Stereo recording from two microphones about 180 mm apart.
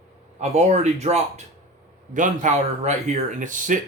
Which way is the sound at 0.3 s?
40° right (ahead or behind).